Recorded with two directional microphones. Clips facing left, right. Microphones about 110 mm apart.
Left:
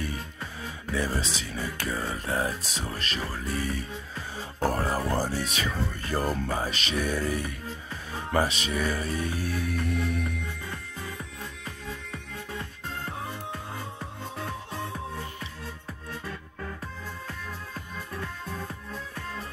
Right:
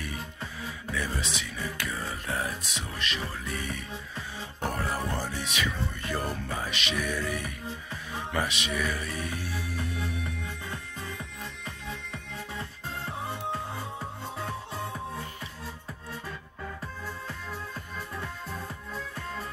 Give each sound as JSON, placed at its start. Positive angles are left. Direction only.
{"t": 0.0, "sound": "music", "side_deg": 30}
{"t": 9.4, "sound": "music", "side_deg": 60}